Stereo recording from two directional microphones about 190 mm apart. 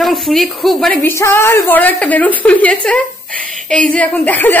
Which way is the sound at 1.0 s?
10° left (ahead or behind).